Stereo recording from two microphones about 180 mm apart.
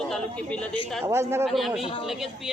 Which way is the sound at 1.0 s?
15° right (ahead or behind).